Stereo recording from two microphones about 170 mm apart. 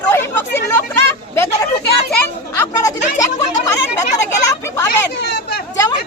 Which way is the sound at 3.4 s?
20° left (ahead or behind).